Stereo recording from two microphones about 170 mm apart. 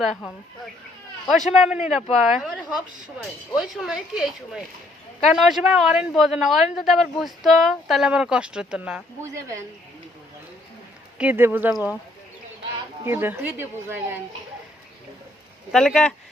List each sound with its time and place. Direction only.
0.2 s speech: 5° left (ahead or behind)
1.5 s speech: 5° right (ahead or behind)
9.2 s speech: 15° right (ahead or behind)
11.2 s speech: 10° right (ahead or behind)
13.1 s speech: 15° right (ahead or behind)
15.7 s speech: 5° left (ahead or behind)